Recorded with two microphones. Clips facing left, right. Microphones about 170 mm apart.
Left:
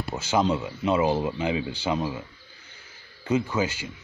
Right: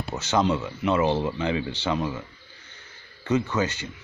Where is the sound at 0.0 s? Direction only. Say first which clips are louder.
Even; 10° left (ahead or behind).